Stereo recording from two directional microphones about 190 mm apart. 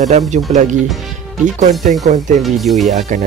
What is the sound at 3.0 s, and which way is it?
Speech, 40° right (ahead or behind).